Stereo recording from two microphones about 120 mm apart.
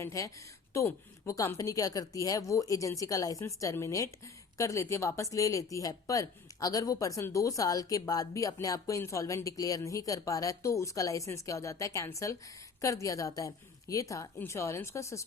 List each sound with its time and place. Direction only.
0.0 s a woman's voice: 25° left (ahead or behind)